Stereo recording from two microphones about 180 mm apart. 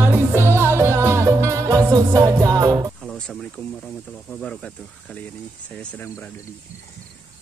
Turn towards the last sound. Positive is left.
turn(degrees=10)  # may be behind; listen again after turning